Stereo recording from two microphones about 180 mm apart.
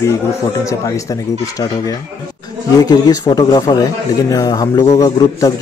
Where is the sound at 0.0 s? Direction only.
15° left (ahead or behind).